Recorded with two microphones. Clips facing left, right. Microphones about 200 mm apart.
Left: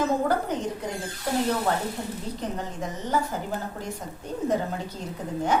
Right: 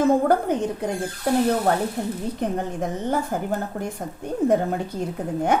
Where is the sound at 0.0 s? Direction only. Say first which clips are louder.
Right 6 dB; 55° right (ahead or behind).